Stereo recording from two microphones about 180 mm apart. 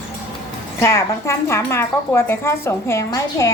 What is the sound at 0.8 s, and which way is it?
Speech, 15° left (ahead or behind).